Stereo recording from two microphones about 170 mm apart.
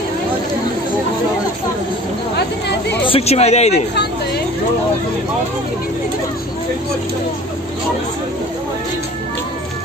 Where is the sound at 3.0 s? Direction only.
35° left (ahead or behind).